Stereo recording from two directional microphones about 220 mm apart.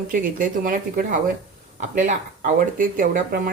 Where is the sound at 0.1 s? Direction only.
40° right (ahead or behind).